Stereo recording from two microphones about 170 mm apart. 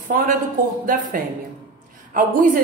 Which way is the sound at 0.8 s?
50° right (ahead or behind).